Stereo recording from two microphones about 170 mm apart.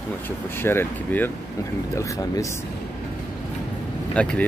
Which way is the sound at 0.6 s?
15° left (ahead or behind).